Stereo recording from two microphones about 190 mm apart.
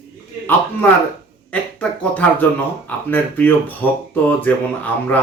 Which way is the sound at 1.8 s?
10° left (ahead or behind).